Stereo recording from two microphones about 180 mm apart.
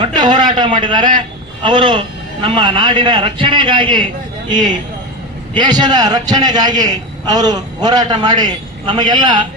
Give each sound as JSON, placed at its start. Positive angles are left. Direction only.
{"t": 0.0, "sound": "a man's voice", "side_deg": -25}